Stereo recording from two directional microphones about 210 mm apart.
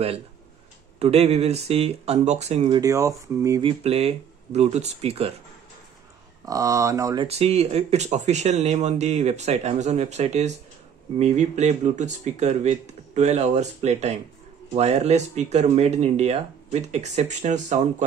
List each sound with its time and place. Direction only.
0.9 s speech: 30° right (ahead or behind)
2.8 s speech: 15° right (ahead or behind)
3.8 s speech: 30° right (ahead or behind)
6.4 s speech: 15° right (ahead or behind)
7.2 s speech: 30° right (ahead or behind)